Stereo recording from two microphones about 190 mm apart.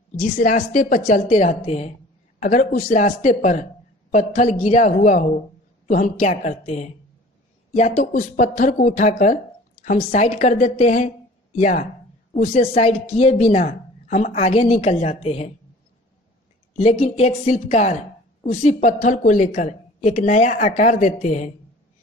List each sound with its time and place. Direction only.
0.2 s a woman's voice: 45° left (ahead or behind)
16.7 s a woman's voice: 35° left (ahead or behind)